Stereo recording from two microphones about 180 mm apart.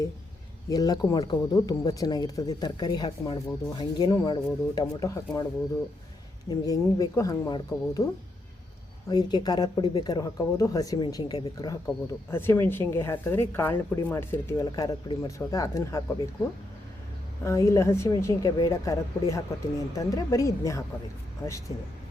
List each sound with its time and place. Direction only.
0.7 s speech: 20° left (ahead or behind)
6.5 s speech: 20° left (ahead or behind)
9.0 s a woman's voice: 20° left (ahead or behind)
17.4 s a woman's voice: 15° left (ahead or behind)